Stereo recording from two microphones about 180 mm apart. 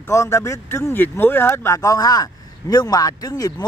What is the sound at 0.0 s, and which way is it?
Speech, 15° left (ahead or behind).